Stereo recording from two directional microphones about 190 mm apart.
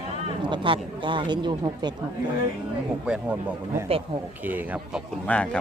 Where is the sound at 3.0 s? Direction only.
5° right (ahead or behind).